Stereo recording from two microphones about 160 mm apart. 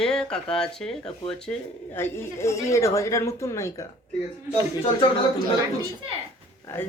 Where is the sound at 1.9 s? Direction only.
15° left (ahead or behind).